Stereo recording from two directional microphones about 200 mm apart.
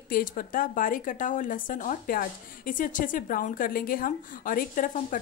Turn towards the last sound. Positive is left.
turn(degrees=40)  # may be behind; listen again after turning